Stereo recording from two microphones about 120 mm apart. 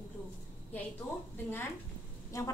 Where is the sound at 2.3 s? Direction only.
25° left (ahead or behind).